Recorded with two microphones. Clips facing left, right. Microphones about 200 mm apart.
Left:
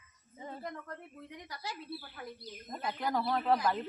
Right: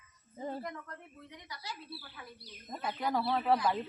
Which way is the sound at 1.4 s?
50° left (ahead or behind).